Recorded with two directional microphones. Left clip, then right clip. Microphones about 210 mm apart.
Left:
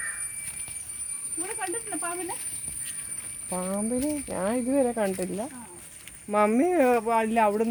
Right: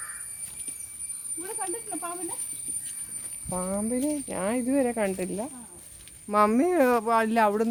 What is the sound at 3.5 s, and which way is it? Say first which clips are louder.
Speech: even; 10° right (ahead or behind).